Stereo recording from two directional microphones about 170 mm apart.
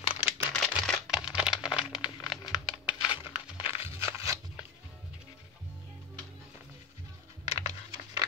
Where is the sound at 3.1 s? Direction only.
30° left (ahead or behind).